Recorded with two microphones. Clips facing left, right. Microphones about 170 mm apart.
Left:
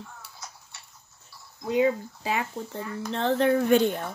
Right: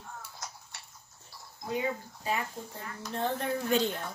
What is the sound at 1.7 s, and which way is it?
Speech, 90° left.